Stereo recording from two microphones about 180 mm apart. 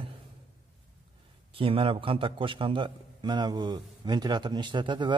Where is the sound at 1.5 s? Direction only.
30° right (ahead or behind).